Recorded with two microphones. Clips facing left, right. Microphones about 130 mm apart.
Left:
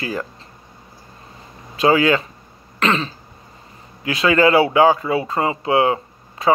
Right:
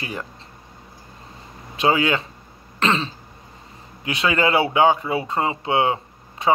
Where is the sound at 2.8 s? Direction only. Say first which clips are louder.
Left 2 dB; 30° right (ahead or behind).